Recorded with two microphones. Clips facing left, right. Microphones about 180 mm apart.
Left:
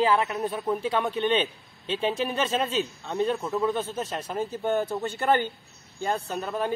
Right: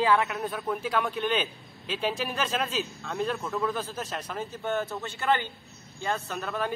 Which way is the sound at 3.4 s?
20° left (ahead or behind).